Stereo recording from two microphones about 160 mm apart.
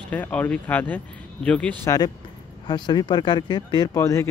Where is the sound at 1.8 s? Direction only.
20° left (ahead or behind).